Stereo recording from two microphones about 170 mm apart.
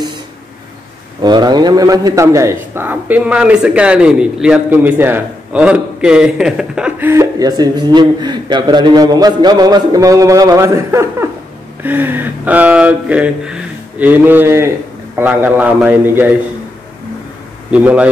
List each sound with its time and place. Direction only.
1.2 s a man's voice: 25° right (ahead or behind); by 16.3 s 10° right (ahead or behind)
17.6 s a man's voice: 5° right (ahead or behind)